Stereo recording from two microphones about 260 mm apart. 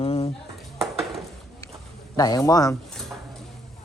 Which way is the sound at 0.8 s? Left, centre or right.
Centre.